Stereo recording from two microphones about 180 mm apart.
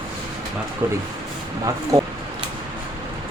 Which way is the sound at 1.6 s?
20° right (ahead or behind).